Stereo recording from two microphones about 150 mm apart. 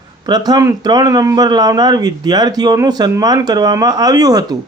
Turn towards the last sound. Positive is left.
turn(degrees=-25)  # may be behind; listen again after turning